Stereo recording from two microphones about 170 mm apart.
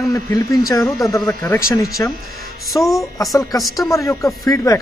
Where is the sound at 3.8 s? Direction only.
20° left (ahead or behind).